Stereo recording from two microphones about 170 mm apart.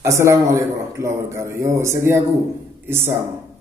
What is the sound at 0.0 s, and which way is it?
A man's voice, 15° right (ahead or behind).